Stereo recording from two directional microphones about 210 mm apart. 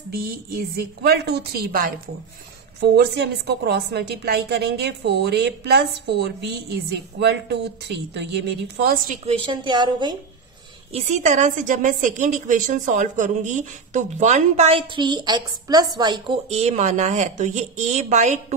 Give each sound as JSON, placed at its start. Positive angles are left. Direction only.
{"t": 0.1, "sound": "a woman's voice", "side_deg": -45}
{"t": 10.9, "sound": "a woman's voice", "side_deg": -30}